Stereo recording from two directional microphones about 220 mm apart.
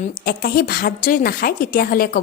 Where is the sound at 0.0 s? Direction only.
40° left (ahead or behind).